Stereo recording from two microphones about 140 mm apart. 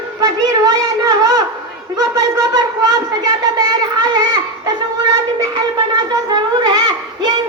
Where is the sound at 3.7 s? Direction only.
30° right (ahead or behind).